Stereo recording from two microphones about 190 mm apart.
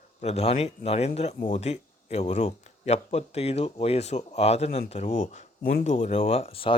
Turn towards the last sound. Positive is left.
turn(degrees=30)  # may be behind; listen again after turning